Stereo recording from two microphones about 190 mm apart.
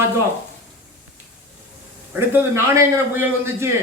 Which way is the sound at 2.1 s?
10° right (ahead or behind).